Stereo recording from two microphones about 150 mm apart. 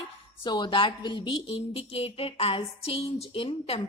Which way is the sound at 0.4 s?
30° left (ahead or behind).